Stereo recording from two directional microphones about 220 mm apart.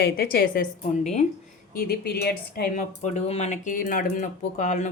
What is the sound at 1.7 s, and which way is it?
Speech, 45° left (ahead or behind).